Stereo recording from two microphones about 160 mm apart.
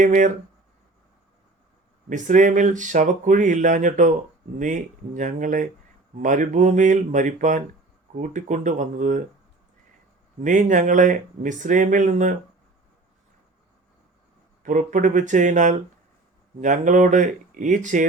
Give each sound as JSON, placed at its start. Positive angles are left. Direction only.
{"t": 0.0, "sound": "speech", "side_deg": -50}
{"t": 2.0, "sound": "speech", "side_deg": -50}
{"t": 10.4, "sound": "speech", "side_deg": -50}
{"t": 14.6, "sound": "speech", "side_deg": -55}